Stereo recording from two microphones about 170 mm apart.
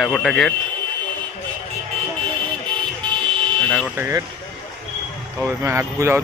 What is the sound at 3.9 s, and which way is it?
Speech, 15° right (ahead or behind).